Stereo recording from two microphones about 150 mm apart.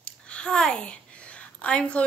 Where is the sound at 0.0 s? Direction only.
5° left (ahead or behind).